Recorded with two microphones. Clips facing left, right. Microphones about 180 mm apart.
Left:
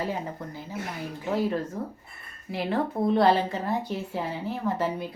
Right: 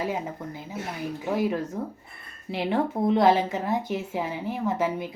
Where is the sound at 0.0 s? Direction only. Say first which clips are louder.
Right 1 dB; 15° right (ahead or behind).